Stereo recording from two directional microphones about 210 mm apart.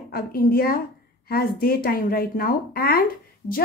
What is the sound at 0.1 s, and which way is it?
Speech, 45° left (ahead or behind).